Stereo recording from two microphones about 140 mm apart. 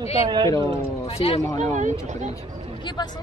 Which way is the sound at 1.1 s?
45° left (ahead or behind).